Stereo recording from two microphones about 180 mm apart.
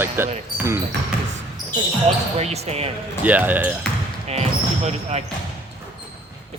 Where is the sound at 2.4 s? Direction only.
35° right (ahead or behind).